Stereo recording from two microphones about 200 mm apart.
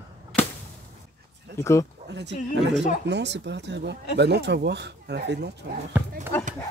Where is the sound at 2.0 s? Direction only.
60° right (ahead or behind).